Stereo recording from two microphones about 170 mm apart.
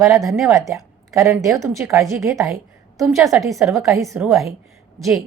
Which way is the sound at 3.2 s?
Centre (ahead or behind).